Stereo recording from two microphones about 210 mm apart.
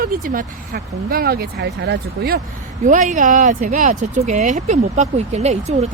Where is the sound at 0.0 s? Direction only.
45° right (ahead or behind).